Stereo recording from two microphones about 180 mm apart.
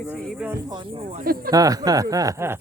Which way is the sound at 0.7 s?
25° right (ahead or behind).